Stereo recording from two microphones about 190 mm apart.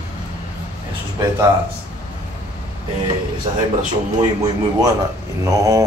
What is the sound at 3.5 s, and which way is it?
Speech, 35° right (ahead or behind).